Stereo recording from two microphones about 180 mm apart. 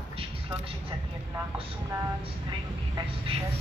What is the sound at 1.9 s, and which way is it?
A man's voice, 20° right (ahead or behind).